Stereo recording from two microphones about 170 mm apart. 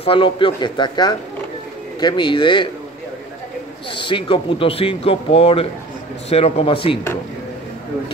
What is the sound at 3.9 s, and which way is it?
A man's voice, 30° left (ahead or behind).